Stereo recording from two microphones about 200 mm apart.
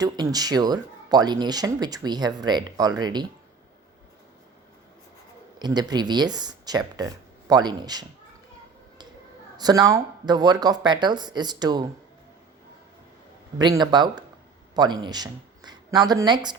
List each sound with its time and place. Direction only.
0.0 s speech: 20° right (ahead or behind)
5.5 s speech: 20° right (ahead or behind)
9.6 s speech: 20° right (ahead or behind)
13.6 s speech: 20° right (ahead or behind)